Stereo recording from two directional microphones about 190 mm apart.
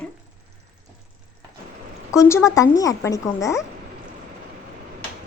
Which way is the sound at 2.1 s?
15° left (ahead or behind).